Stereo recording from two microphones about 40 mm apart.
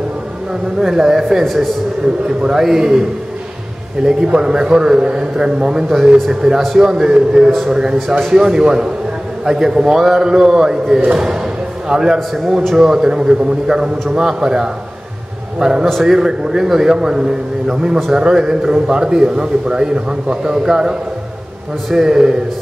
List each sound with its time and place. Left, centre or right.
0.7 s a man's voice: centre
1.4 s a man's voice: centre
2.4 s a man's voice: centre
4.0 s a man's voice: centre
9.9 s a man's voice: centre
21.9 s a man's voice: centre